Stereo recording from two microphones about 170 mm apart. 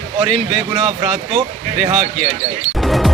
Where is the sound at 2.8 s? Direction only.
Centre (ahead or behind).